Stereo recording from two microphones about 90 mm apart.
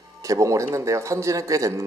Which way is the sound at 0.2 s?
35° right (ahead or behind).